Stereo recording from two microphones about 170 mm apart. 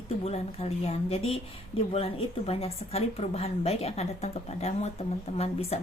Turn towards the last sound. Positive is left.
turn(degrees=35)  # may be behind; listen again after turning